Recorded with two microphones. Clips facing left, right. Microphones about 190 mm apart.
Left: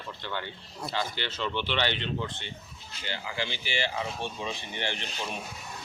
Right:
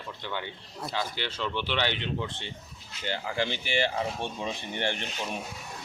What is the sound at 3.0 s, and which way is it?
Speech, 50° right (ahead or behind).